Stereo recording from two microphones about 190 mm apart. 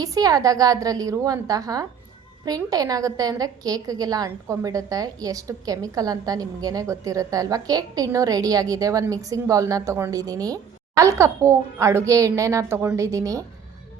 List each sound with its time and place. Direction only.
0.0 s a woman's voice: 20° right (ahead or behind)